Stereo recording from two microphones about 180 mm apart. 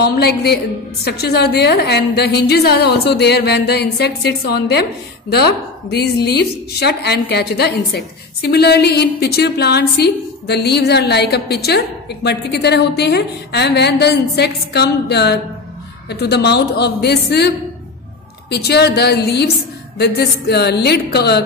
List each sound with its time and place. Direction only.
0.0 s a woman's voice: 65° left (ahead or behind)
5.9 s a woman's voice: 65° left (ahead or behind)